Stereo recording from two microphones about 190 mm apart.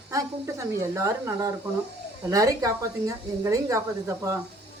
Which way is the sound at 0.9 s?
15° right (ahead or behind).